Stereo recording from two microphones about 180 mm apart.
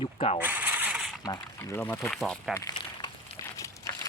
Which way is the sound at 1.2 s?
20° left (ahead or behind).